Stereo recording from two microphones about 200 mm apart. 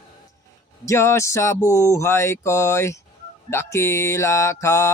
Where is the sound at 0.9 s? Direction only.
15° left (ahead or behind).